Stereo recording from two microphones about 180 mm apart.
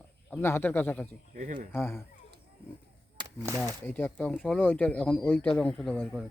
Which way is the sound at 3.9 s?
10° left (ahead or behind).